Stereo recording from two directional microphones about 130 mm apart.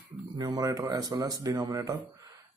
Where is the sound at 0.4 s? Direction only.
30° right (ahead or behind).